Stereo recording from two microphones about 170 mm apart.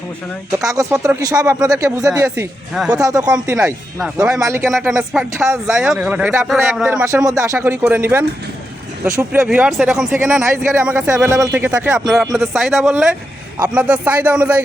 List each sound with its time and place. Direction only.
0.6 s speech: 20° right (ahead or behind)
3.0 s speech: 20° right (ahead or behind)
4.7 s speech: centre (ahead or behind)
4.9 s speech: 15° right (ahead or behind)
9.0 s speech: 15° right (ahead or behind)
9.5 s speech: 5° right (ahead or behind)